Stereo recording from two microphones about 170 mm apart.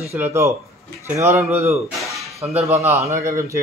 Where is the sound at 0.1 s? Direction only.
15° right (ahead or behind).